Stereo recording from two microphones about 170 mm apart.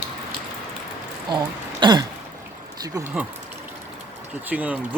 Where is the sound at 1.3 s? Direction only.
25° right (ahead or behind).